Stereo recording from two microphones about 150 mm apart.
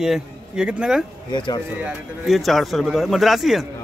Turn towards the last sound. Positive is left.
turn(degrees=0)  # may be behind; listen again after turning